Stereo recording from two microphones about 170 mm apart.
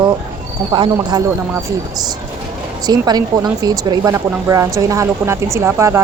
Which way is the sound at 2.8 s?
25° right (ahead or behind).